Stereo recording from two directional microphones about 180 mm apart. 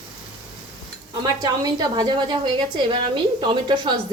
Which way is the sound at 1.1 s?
20° right (ahead or behind).